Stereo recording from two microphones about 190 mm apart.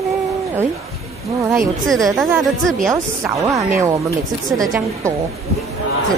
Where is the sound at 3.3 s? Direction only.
15° right (ahead or behind).